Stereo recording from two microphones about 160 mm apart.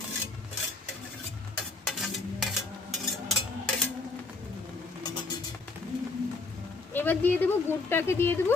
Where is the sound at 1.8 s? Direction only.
Centre (ahead or behind).